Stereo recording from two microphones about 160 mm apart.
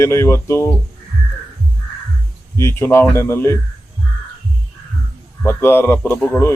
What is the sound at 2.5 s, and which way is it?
Speech, 15° left (ahead or behind).